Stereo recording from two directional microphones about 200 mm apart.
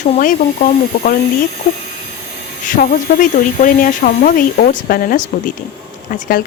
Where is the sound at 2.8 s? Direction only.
45° left (ahead or behind).